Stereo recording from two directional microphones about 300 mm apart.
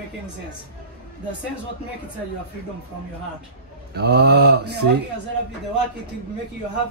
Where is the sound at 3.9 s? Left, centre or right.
Right.